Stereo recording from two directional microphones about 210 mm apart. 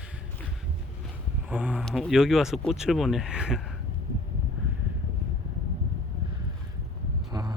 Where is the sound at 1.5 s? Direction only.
5° right (ahead or behind).